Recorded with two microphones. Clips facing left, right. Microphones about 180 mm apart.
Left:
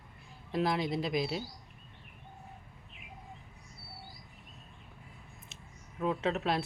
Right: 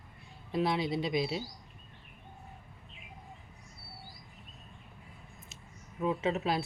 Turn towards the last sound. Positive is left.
turn(degrees=0)  # may be behind; listen again after turning